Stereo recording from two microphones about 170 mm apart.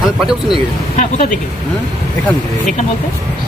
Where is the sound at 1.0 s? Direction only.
45° left (ahead or behind).